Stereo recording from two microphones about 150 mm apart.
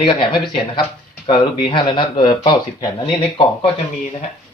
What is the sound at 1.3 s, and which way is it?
Speech, 35° left (ahead or behind).